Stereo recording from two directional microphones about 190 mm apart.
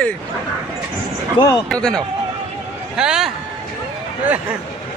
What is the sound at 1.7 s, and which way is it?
Speech, 5° left (ahead or behind).